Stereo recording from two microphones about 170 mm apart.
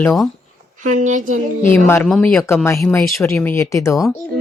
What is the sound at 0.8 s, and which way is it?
Speech, 45° right (ahead or behind).